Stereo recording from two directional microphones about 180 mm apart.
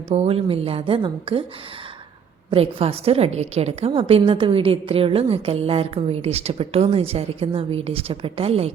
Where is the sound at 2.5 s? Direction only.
30° right (ahead or behind).